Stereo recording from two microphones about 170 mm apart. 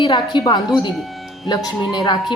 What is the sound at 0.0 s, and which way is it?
A woman's voice, 30° left (ahead or behind).